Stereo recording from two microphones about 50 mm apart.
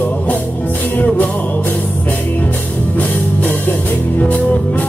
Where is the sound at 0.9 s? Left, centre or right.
Left.